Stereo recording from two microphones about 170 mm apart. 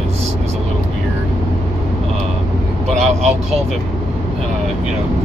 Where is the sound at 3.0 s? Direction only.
40° right (ahead or behind).